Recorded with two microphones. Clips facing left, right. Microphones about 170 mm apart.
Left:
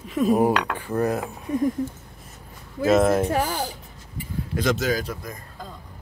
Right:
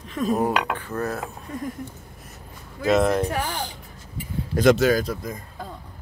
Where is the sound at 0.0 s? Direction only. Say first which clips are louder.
Left 4 dB; 5° left (ahead or behind).